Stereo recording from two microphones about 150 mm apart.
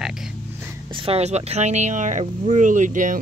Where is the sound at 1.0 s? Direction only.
45° right (ahead or behind).